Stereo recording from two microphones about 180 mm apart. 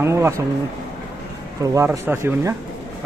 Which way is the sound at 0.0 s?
15° right (ahead or behind).